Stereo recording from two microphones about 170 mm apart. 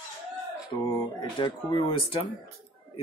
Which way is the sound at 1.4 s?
30° left (ahead or behind).